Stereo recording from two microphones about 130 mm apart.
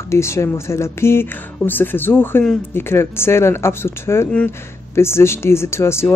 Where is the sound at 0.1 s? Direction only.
20° left (ahead or behind).